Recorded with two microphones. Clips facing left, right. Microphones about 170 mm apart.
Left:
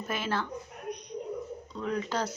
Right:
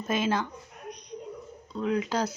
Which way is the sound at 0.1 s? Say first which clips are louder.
Right 5 dB; 15° right (ahead or behind).